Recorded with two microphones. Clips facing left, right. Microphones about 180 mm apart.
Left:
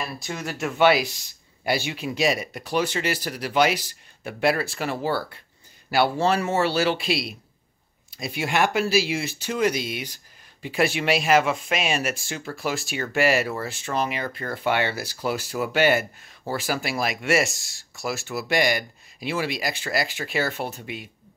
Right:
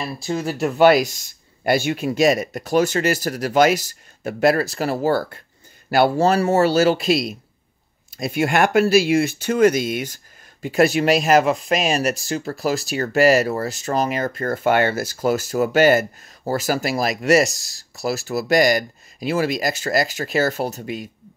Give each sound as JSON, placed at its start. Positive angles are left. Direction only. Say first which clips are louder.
{"t": 0.0, "sound": "speech", "louder": "right 7 dB", "side_deg": -30}
{"t": 0.7, "sound": "speech", "louder": "right 5 dB", "side_deg": -40}